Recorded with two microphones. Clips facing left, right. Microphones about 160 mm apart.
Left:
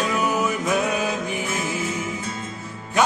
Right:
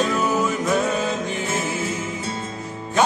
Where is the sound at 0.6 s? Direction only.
10° left (ahead or behind).